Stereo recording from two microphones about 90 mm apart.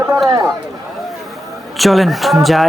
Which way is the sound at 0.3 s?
35° right (ahead or behind).